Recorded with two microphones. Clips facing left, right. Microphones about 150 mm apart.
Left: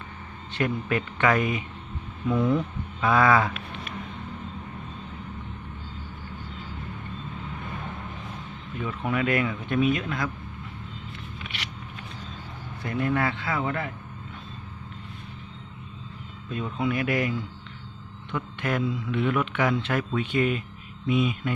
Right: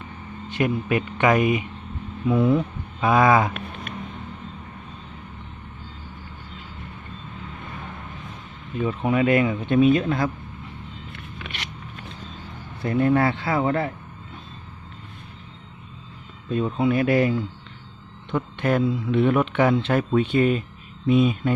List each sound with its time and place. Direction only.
0.5 s speech: 15° right (ahead or behind)
8.8 s speech: 20° right (ahead or behind)
11.1 s a sound: 50° right (ahead or behind)
12.8 s speech: 30° right (ahead or behind)
16.5 s speech: 35° right (ahead or behind)